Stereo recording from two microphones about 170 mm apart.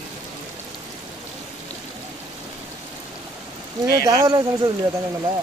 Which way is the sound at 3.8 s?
20° right (ahead or behind).